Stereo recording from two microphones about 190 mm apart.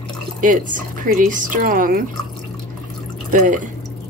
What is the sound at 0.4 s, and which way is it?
Speech, 45° right (ahead or behind).